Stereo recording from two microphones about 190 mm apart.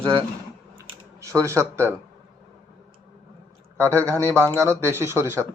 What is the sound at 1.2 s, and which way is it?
Speech, 15° right (ahead or behind).